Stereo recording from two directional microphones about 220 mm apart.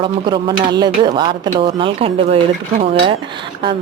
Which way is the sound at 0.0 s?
20° right (ahead or behind).